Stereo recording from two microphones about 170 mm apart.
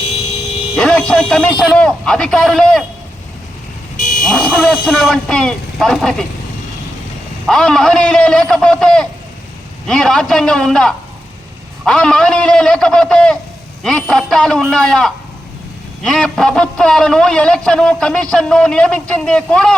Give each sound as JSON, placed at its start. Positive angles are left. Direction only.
{"t": 0.8, "sound": "a man's voice", "side_deg": 5}
{"t": 3.9, "sound": "buzzer", "side_deg": 50}
{"t": 4.2, "sound": "a man's voice", "side_deg": 5}
{"t": 7.4, "sound": "a man's voice", "side_deg": 5}